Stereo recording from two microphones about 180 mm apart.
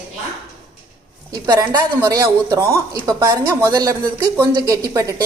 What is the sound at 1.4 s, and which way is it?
Speech, 20° right (ahead or behind).